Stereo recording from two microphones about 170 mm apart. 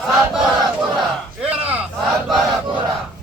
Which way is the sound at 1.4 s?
5° right (ahead or behind).